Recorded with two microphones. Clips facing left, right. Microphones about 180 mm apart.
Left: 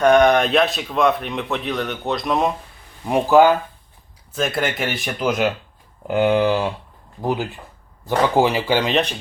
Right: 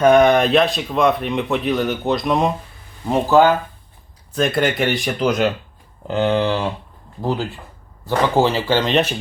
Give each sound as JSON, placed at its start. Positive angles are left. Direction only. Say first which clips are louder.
{"t": 0.0, "sound": "speech", "louder": "right 2 dB", "side_deg": -5}
{"t": 3.1, "sound": "speech", "louder": "even", "side_deg": 15}
{"t": 4.4, "sound": "speech", "louder": "right 4 dB", "side_deg": 0}